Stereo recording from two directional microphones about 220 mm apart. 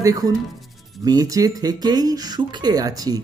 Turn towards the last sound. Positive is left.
turn(degrees=-15)  # may be behind; listen again after turning